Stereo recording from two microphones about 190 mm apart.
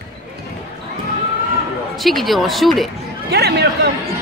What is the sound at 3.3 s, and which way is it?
Speech, 60° right (ahead or behind).